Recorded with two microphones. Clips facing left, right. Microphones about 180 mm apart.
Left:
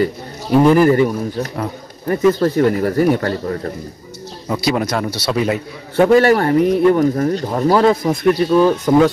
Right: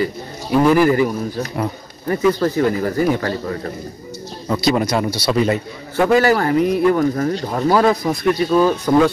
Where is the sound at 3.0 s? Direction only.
50° left (ahead or behind).